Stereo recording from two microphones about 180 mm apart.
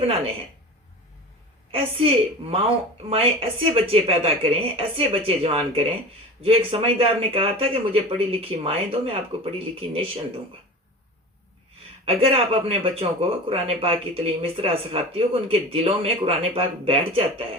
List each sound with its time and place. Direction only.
1.7 s speech: 30° right (ahead or behind)
12.0 s speech: 30° right (ahead or behind)